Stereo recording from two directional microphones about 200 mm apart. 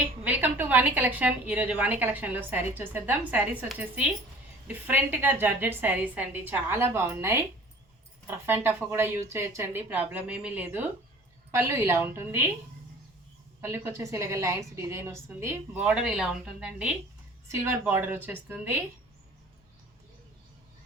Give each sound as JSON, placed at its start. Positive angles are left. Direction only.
{"t": 0.3, "sound": "a woman's voice", "side_deg": -10}
{"t": 13.6, "sound": "a woman's voice", "side_deg": -10}